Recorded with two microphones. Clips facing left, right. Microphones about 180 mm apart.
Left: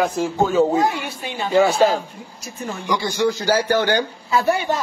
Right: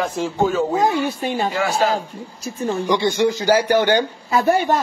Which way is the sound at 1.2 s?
45° right (ahead or behind).